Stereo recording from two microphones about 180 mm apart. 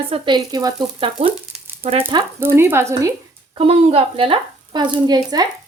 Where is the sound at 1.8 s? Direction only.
35° right (ahead or behind).